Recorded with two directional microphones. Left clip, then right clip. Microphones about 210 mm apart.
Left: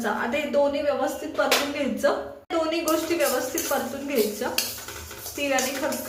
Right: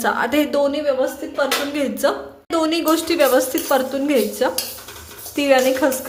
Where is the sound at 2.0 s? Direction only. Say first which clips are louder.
Right 4 dB; 55° right (ahead or behind).